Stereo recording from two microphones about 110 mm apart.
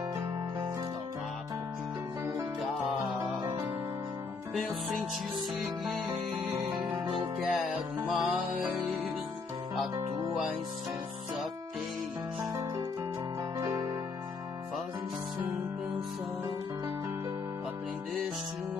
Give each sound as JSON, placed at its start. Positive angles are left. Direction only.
{"t": 7.2, "sound": "music", "side_deg": 0}
{"t": 13.6, "sound": "music", "side_deg": -35}